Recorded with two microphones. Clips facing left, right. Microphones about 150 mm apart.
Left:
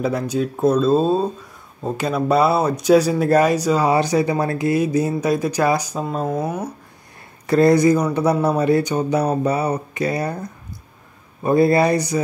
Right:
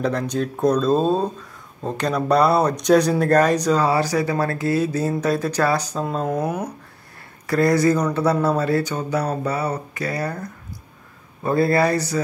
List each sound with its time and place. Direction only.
0.0 s speech: 5° left (ahead or behind)
3.9 s speech: 20° left (ahead or behind); by 6.5 s 5° left (ahead or behind)
7.4 s speech: 25° left (ahead or behind)